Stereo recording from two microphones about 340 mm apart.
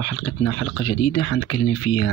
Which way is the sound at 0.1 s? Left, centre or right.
Left.